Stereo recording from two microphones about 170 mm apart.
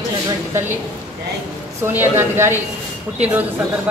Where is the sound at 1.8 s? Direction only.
10° right (ahead or behind).